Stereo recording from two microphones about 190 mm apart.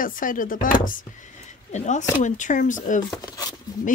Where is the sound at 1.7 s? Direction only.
40° left (ahead or behind).